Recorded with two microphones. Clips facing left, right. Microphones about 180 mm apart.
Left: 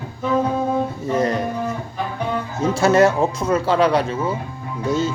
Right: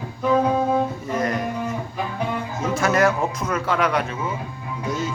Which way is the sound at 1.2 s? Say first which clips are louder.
Left 4 dB; 30° left (ahead or behind).